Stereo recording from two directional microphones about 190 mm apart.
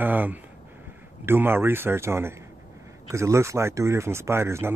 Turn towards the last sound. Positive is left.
turn(degrees=-15)  # may be behind; listen again after turning